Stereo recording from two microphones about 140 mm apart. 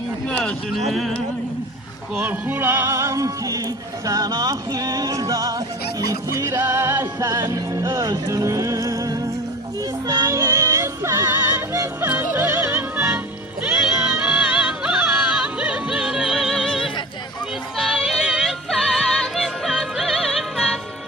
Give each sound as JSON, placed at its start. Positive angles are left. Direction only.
{"t": 0.3, "sound": "speech", "side_deg": 5}
{"t": 0.9, "sound": "music", "side_deg": 0}
{"t": 2.1, "sound": "music", "side_deg": -15}